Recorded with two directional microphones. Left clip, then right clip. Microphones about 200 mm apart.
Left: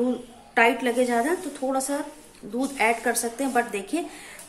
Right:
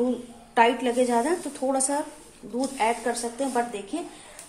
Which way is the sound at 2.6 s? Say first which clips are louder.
Left 2 dB; 25° left (ahead or behind).